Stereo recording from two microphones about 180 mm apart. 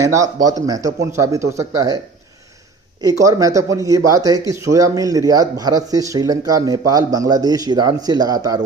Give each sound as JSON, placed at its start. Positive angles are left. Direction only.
{"t": 0.0, "sound": "speech", "side_deg": -15}
{"t": 3.0, "sound": "speech", "side_deg": -20}